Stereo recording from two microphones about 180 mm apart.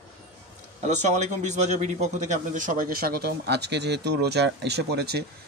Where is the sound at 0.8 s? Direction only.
40° right (ahead or behind).